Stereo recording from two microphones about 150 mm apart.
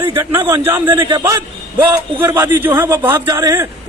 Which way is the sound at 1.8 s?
15° right (ahead or behind).